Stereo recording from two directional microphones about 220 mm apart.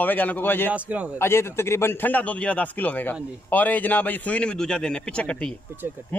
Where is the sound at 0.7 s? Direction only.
5° right (ahead or behind).